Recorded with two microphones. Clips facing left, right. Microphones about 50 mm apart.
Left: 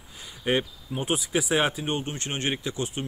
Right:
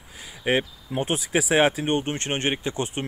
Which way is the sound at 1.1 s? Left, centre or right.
Right.